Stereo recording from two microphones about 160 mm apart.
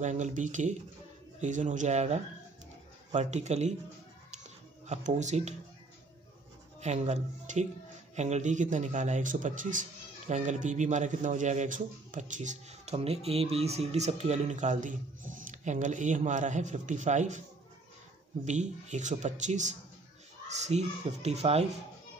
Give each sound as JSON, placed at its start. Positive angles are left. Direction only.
{"t": 0.0, "sound": "a man's voice", "side_deg": -50}
{"t": 4.3, "sound": "a sound", "side_deg": -45}
{"t": 6.8, "sound": "a man's voice", "side_deg": -45}
{"t": 18.4, "sound": "a man's voice", "side_deg": -45}